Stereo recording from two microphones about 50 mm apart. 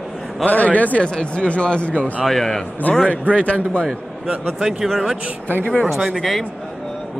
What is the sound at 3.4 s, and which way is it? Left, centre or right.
Speech, left.